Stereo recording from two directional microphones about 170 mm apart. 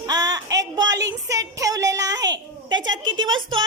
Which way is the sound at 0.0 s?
20° right (ahead or behind).